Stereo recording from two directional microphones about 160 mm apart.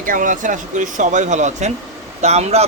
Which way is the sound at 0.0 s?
55° right (ahead or behind).